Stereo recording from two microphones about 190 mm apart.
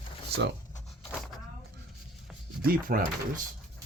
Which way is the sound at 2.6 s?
50° right (ahead or behind).